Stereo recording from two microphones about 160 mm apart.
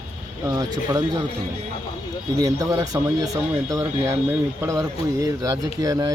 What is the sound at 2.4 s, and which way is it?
Speech, 20° right (ahead or behind).